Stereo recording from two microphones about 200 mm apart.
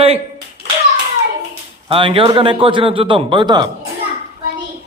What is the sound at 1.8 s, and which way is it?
A man's voice, 25° right (ahead or behind).